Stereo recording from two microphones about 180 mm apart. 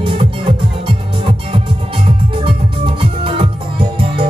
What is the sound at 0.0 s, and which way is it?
Music, 30° right (ahead or behind).